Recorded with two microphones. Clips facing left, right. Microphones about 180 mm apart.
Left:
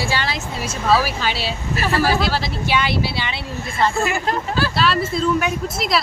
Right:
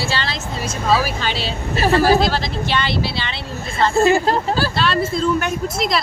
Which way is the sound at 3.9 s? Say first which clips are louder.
Right 7 dB; 35° right (ahead or behind).